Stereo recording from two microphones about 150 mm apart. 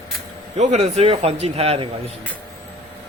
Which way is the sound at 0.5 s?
50° right (ahead or behind).